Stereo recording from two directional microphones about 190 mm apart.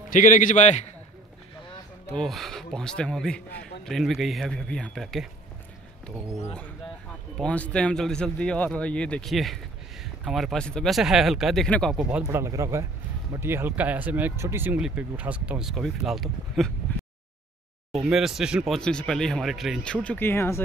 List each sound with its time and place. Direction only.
0.1 s a man's voice: 45° left (ahead or behind)
2.0 s speech: 5° left (ahead or behind)
7.3 s speech: 5° left (ahead or behind)
18.0 s speech: centre (ahead or behind); by 20.6 s 15° left (ahead or behind)